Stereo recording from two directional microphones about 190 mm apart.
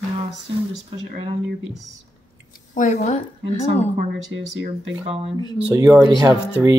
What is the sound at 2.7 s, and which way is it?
Speech, 40° left (ahead or behind).